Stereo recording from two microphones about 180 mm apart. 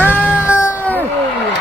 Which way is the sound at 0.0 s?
10° left (ahead or behind).